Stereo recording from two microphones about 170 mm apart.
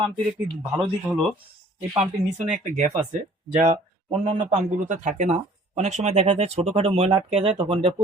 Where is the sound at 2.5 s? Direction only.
45° right (ahead or behind).